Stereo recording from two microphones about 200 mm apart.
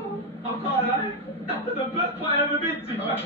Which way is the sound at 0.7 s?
30° left (ahead or behind).